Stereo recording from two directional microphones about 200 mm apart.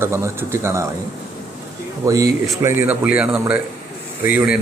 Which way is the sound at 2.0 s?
15° right (ahead or behind).